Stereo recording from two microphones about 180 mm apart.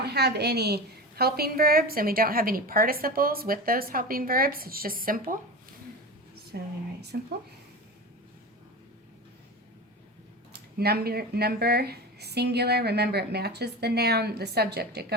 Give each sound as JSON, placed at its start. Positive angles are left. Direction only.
{"t": 0.0, "sound": "a woman's voice", "side_deg": -65}
{"t": 6.5, "sound": "a woman's voice", "side_deg": -60}
{"t": 10.8, "sound": "a woman's voice", "side_deg": -60}